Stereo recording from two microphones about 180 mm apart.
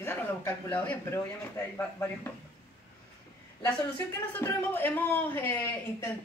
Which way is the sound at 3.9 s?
10° left (ahead or behind).